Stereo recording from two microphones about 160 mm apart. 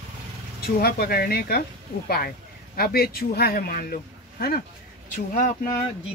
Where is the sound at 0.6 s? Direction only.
75° left (ahead or behind).